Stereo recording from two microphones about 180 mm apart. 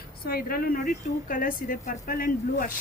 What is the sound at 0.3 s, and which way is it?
A woman's voice, 55° left (ahead or behind).